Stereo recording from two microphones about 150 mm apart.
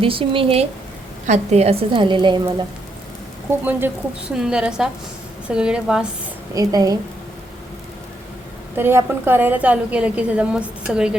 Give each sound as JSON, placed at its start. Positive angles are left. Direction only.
{"t": 0.0, "sound": "a woman's voice", "side_deg": -35}
{"t": 3.6, "sound": "a woman's voice", "side_deg": -15}
{"t": 6.5, "sound": "a woman's voice", "side_deg": -25}
{"t": 8.7, "sound": "a woman's voice", "side_deg": -15}